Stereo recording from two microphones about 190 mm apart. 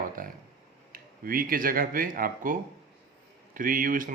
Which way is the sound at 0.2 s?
45° right (ahead or behind).